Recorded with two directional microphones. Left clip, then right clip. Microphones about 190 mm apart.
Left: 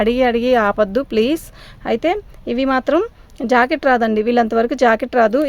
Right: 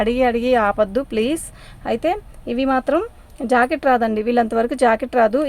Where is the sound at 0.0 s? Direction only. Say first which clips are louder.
Left 2 dB; 35° left (ahead or behind).